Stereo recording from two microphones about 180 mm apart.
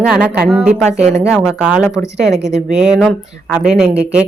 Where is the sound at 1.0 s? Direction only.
40° right (ahead or behind).